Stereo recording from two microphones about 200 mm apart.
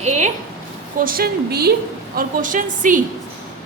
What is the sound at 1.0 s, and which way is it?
Speech, 45° right (ahead or behind).